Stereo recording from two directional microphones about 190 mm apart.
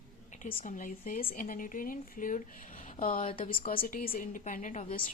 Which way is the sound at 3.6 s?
45° left (ahead or behind).